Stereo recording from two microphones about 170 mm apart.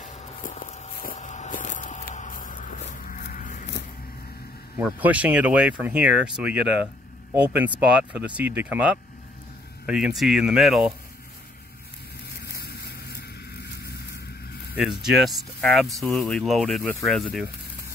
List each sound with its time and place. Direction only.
0.0 s walk: 50° left (ahead or behind)
4.8 s speech: 10° right (ahead or behind)
12.5 s vehicle: 70° left (ahead or behind)
14.8 s speech: centre (ahead or behind)